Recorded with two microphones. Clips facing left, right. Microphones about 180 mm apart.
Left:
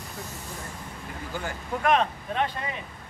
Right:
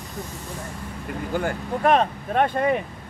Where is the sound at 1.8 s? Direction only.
45° right (ahead or behind).